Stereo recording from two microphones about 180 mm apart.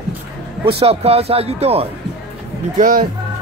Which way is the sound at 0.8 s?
35° right (ahead or behind).